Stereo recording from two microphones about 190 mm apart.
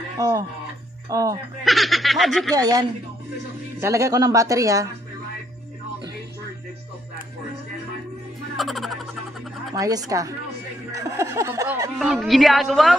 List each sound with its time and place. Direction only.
0.2 s a woman's voice: 20° right (ahead or behind)
1.6 s speech: centre (ahead or behind)
2.5 s a woman's voice: 20° right (ahead or behind)
8.5 s speech: centre (ahead or behind)
9.8 s a woman's voice: 20° right (ahead or behind)
12.0 s speech: centre (ahead or behind)